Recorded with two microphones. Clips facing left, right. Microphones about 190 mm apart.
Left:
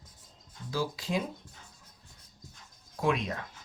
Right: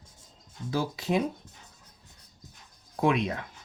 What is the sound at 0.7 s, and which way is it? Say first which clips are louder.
Speech: right 4 dB; 60° right (ahead or behind).